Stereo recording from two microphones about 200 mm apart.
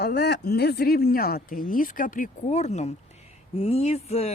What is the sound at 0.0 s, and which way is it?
Speech, 55° left (ahead or behind).